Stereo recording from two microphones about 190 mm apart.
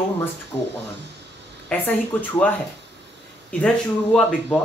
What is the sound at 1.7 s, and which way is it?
Speech, 5° left (ahead or behind).